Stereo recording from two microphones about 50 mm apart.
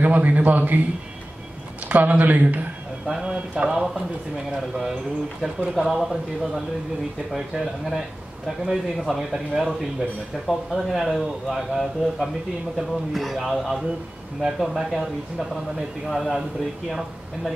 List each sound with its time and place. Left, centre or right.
0.0 s a man's voice: right
1.9 s a man's voice: right
3.1 s speech: centre
5.8 s speech: centre